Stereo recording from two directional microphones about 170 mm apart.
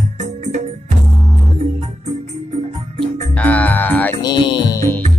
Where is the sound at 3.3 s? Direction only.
10° left (ahead or behind).